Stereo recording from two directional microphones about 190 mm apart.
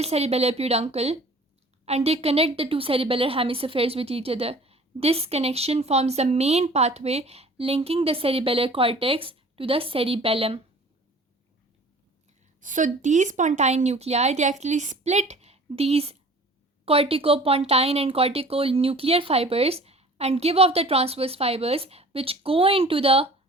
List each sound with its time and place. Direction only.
0.0 s a woman's voice: 35° right (ahead or behind)
12.5 s a woman's voice: 40° right (ahead or behind)